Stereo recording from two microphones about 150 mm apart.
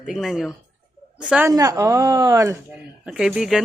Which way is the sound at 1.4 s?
20° right (ahead or behind).